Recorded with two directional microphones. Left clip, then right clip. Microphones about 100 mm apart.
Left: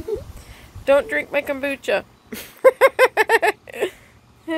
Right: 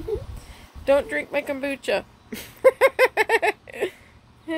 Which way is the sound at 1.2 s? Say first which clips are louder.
Left 4 dB; 10° right (ahead or behind).